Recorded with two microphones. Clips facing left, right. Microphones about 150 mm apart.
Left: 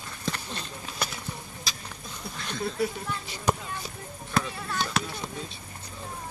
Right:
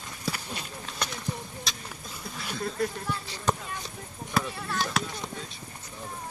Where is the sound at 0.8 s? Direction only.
5° left (ahead or behind).